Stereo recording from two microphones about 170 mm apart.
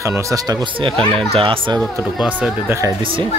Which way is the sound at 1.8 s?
5° right (ahead or behind).